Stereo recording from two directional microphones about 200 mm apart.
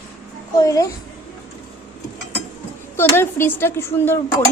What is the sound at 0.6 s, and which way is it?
Speech, 15° left (ahead or behind).